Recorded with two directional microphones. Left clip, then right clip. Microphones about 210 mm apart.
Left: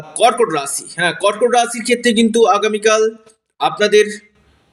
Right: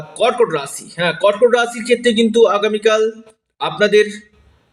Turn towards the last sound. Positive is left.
turn(degrees=40)  # may be behind; listen again after turning